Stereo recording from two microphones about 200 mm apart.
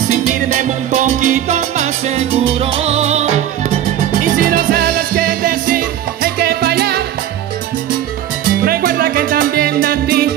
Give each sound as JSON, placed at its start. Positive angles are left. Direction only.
{"t": 0.3, "sound": "music", "side_deg": -35}
{"t": 4.2, "sound": "music", "side_deg": -45}
{"t": 8.6, "sound": "music", "side_deg": -45}